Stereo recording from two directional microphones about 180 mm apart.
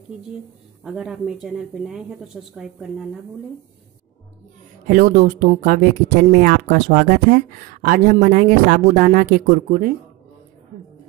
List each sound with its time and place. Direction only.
0.8 s speech: 5° right (ahead or behind)
4.8 s speech: 45° right (ahead or behind)